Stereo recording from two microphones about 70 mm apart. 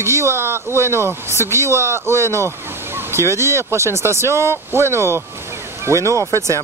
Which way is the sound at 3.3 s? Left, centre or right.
Right.